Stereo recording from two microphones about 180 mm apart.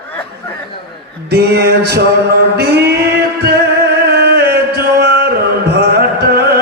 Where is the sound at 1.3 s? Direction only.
65° right (ahead or behind).